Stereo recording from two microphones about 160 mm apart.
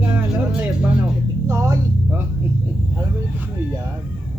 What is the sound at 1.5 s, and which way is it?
Music, 20° right (ahead or behind).